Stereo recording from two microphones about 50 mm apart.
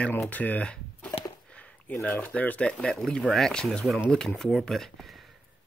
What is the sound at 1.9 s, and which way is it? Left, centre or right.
Speech, left.